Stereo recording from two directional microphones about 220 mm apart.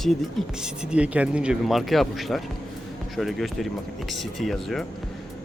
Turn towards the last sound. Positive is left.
turn(degrees=0)  # may be behind; listen again after turning